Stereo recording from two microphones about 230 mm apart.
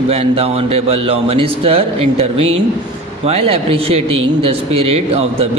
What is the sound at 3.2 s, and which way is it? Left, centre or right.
Speech, right.